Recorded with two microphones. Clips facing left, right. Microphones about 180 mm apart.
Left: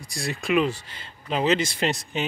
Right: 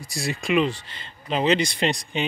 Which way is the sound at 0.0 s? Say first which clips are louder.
Right 2 dB; 5° right (ahead or behind).